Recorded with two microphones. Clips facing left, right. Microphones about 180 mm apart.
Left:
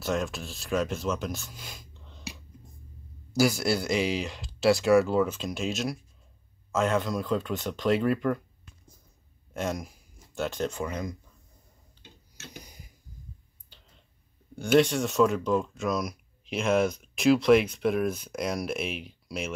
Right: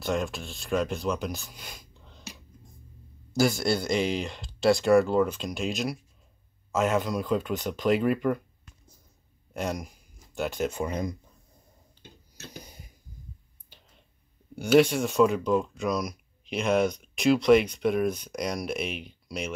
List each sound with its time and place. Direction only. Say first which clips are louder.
0.0 s speech: right 1 dB; centre (ahead or behind)
3.3 s speech: even; 5° left (ahead or behind)
9.5 s speech: even; centre (ahead or behind)
10.8 s speech: right 3 dB; 20° right (ahead or behind)
14.5 s speech: right 2 dB; 5° right (ahead or behind)